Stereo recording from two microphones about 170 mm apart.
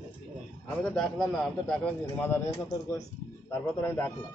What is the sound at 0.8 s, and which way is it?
A man's voice, centre (ahead or behind).